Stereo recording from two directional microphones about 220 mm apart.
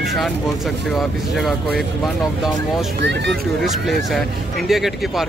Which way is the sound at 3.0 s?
55° right (ahead or behind).